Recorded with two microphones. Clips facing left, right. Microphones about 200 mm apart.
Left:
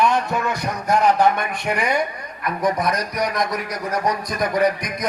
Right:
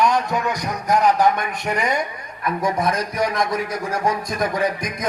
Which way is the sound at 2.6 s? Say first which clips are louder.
Left 1 dB; 25° right (ahead or behind).